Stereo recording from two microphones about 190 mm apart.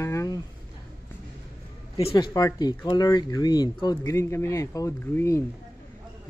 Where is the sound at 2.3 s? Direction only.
20° left (ahead or behind).